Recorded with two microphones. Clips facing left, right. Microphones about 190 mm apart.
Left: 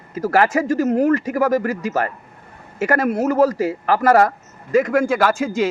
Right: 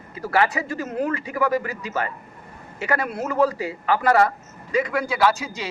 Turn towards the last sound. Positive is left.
turn(degrees=50)  # may be behind; listen again after turning